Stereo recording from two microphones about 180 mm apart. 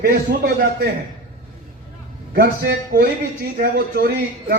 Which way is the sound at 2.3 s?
60° right (ahead or behind).